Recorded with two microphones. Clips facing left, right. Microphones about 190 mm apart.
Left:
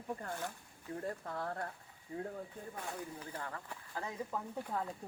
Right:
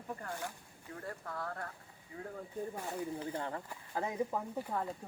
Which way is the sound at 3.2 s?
25° right (ahead or behind).